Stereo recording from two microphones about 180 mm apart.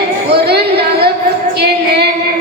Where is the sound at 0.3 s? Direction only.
65° right (ahead or behind).